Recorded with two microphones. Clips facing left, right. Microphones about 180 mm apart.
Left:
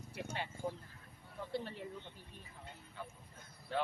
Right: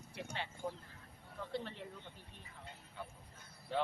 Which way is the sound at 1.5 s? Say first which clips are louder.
Left 2 dB; 10° left (ahead or behind).